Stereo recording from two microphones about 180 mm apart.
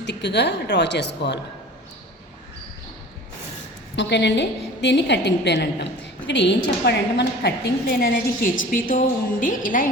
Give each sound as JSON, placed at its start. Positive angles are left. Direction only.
{"t": 0.0, "sound": "a woman's voice", "side_deg": 70}
{"t": 3.9, "sound": "a woman's voice", "side_deg": 75}